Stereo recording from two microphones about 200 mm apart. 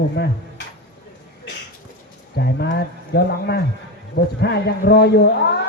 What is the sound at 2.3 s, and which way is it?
Speech, 55° left (ahead or behind).